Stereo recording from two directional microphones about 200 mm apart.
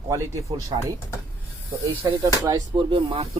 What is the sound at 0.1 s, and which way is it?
Speech, 15° right (ahead or behind).